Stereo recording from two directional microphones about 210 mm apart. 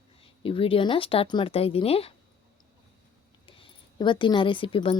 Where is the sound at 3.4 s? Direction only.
25° left (ahead or behind).